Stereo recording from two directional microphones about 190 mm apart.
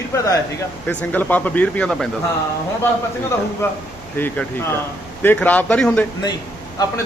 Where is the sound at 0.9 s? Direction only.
10° left (ahead or behind).